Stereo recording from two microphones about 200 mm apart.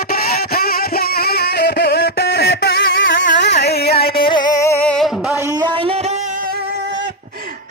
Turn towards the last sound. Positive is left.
turn(degrees=-20)  # may be behind; listen again after turning